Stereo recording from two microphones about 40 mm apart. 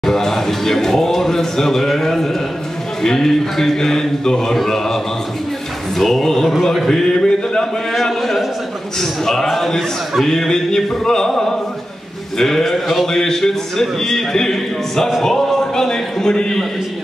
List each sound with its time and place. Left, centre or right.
0.0 s music: centre
3.0 s a man's voice: centre
6.9 s a sound: centre
7.9 s a man's voice: centre